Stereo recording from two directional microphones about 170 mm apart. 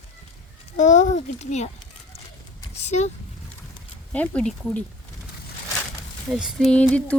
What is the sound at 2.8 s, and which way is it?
Speech, 40° left (ahead or behind).